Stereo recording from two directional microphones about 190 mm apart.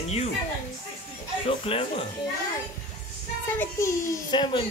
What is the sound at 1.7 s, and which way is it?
Speech, 30° left (ahead or behind).